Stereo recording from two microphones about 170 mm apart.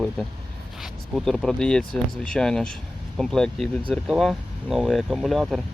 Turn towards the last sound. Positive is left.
turn(degrees=0)  # may be behind; listen again after turning